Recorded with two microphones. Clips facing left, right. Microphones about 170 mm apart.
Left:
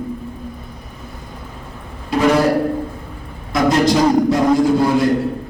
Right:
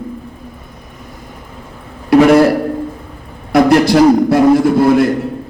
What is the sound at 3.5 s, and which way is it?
A man's voice, 70° right (ahead or behind).